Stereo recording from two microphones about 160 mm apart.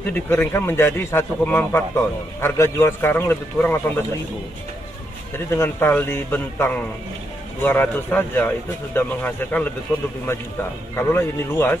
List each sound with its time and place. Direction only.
0.1 s a man's voice: 15° left (ahead or behind)
5.5 s a man's voice: 10° left (ahead or behind)